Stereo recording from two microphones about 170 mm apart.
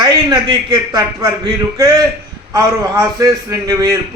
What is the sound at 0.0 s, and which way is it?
A man's voice, 25° right (ahead or behind).